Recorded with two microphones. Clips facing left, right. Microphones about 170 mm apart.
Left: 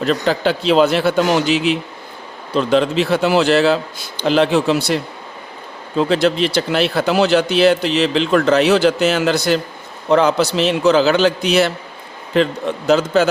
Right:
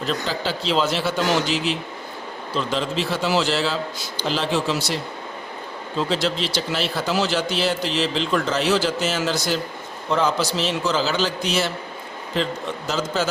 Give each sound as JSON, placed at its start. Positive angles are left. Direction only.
{"t": 0.0, "sound": "speech", "side_deg": 65}
{"t": 6.0, "sound": "speech", "side_deg": 60}